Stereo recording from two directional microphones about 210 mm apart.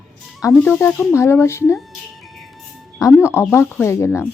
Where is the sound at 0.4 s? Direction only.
10° left (ahead or behind).